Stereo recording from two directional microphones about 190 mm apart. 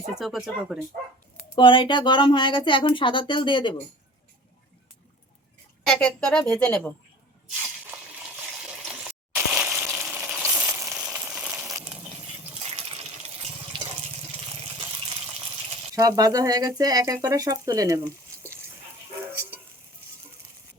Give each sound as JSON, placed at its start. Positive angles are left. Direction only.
{"t": 0.1, "sound": "a woman's voice", "side_deg": 0}
{"t": 1.5, "sound": "speech", "side_deg": 25}
{"t": 5.9, "sound": "a woman's voice", "side_deg": 5}
{"t": 8.8, "sound": "water", "side_deg": -5}
{"t": 11.1, "sound": "frying", "side_deg": -5}
{"t": 12.6, "sound": "water", "side_deg": -30}
{"t": 16.0, "sound": "speech", "side_deg": -20}